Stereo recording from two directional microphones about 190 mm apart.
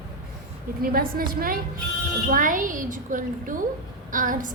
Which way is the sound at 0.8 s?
50° right (ahead or behind).